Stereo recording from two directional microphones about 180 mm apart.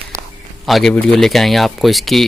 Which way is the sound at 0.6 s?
Centre (ahead or behind).